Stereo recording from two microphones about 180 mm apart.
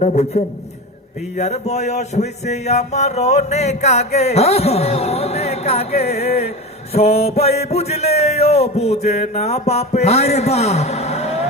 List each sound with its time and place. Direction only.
0.0 s music: 40° left (ahead or behind)